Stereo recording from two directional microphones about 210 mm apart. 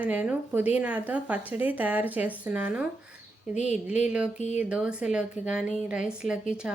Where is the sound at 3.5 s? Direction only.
35° left (ahead or behind).